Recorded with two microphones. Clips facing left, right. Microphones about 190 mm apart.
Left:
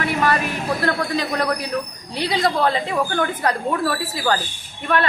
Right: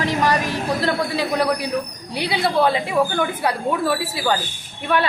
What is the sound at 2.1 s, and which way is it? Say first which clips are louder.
A woman's voice: right 1 dB; 10° right (ahead or behind).